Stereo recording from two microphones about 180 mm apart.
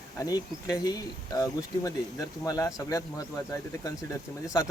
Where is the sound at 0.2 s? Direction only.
20° left (ahead or behind).